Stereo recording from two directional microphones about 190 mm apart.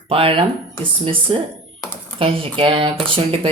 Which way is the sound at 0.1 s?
30° right (ahead or behind).